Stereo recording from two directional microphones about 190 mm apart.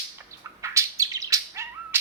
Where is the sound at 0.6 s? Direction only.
15° right (ahead or behind).